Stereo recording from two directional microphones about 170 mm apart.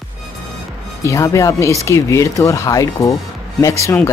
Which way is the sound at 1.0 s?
20° left (ahead or behind).